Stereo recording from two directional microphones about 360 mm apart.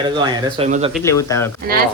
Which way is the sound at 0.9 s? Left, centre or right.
Centre.